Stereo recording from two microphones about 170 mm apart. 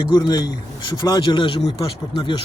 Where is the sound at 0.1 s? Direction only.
25° left (ahead or behind).